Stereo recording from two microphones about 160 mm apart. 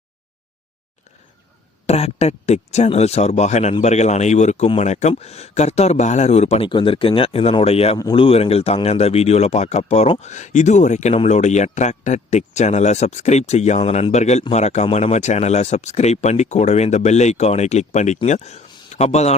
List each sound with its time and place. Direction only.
1.9 s speech: 40° left (ahead or behind)
6.7 s speech: 30° left (ahead or behind)